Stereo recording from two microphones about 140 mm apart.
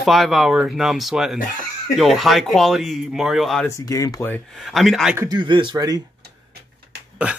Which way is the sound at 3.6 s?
25° left (ahead or behind).